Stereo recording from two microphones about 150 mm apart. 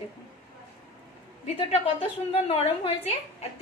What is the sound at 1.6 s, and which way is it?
Speech, 40° left (ahead or behind).